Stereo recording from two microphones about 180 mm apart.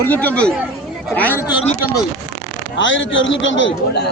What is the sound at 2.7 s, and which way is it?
A man's voice, 90° left.